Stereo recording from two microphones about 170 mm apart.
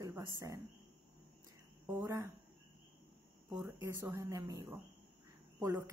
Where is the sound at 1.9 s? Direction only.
20° right (ahead or behind).